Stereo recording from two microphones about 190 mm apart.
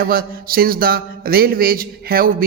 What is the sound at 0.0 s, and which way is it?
Speech, 50° right (ahead or behind).